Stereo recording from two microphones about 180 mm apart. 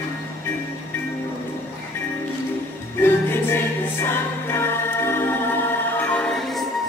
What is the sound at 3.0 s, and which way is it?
Choir, 10° left (ahead or behind).